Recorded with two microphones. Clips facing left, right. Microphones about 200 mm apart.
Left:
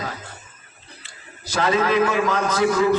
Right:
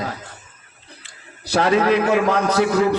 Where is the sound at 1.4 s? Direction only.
65° right (ahead or behind).